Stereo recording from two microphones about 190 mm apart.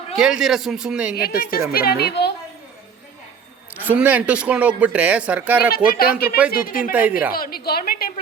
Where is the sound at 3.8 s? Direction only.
5° right (ahead or behind).